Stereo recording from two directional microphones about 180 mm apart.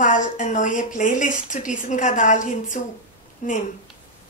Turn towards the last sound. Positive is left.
turn(degrees=45)  # may be behind; listen again after turning